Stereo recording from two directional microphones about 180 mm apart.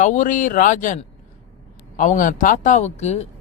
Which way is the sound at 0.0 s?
45° left (ahead or behind).